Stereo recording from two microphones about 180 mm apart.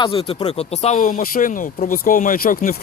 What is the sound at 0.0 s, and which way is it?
Speech, 30° left (ahead or behind).